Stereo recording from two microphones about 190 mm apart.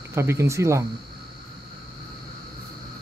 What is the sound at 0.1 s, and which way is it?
Speech, 15° right (ahead or behind).